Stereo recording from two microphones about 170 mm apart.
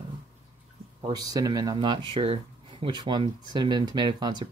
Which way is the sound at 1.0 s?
20° right (ahead or behind).